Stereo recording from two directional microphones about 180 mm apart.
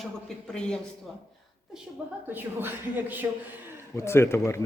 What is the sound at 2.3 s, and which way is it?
Speech, 10° right (ahead or behind).